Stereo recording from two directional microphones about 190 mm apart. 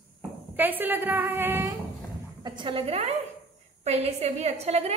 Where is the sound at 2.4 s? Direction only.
25° right (ahead or behind).